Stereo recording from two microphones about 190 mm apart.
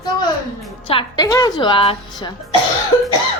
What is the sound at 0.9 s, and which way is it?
A woman's voice, 25° left (ahead or behind).